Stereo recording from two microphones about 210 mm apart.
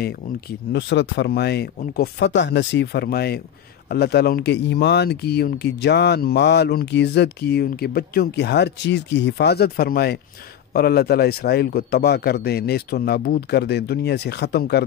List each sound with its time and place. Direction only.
0.7 s speech: 55° left (ahead or behind)